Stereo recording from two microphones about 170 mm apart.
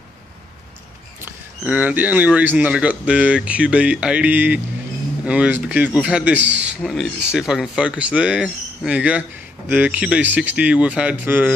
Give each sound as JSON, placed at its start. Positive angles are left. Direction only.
{"t": 1.2, "sound": "speech", "side_deg": -10}
{"t": 6.3, "sound": "a man's voice", "side_deg": -90}
{"t": 6.6, "sound": "speech", "side_deg": -5}